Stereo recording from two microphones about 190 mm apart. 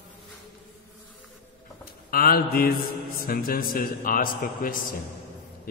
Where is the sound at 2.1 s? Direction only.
50° left (ahead or behind).